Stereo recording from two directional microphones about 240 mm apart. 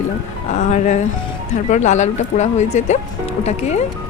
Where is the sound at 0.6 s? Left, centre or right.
Left.